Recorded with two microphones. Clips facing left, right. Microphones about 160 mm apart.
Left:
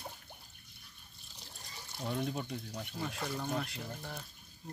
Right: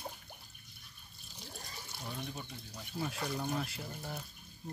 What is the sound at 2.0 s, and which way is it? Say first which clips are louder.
Speech: left 8 dB; 60° left (ahead or behind).